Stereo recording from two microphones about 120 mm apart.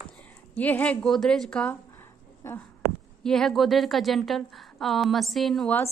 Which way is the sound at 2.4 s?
20° left (ahead or behind).